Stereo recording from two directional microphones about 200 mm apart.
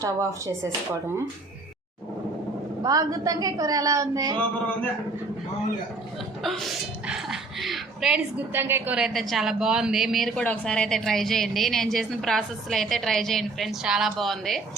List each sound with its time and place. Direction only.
0.0 s a woman's voice: 15° right (ahead or behind)
2.8 s a woman's voice: 20° right (ahead or behind)
6.4 s speech: centre (ahead or behind)